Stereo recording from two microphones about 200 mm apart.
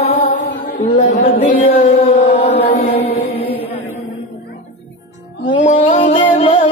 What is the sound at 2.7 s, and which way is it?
Mantra, 30° left (ahead or behind).